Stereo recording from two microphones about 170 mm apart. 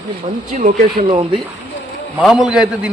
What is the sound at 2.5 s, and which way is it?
Speech, 5° right (ahead or behind).